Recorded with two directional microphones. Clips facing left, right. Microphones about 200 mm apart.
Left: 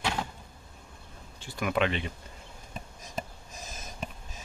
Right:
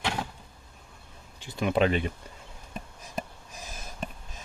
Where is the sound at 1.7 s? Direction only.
40° right (ahead or behind).